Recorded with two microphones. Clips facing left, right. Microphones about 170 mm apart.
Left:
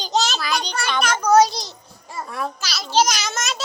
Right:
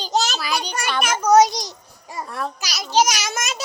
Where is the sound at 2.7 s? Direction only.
15° right (ahead or behind).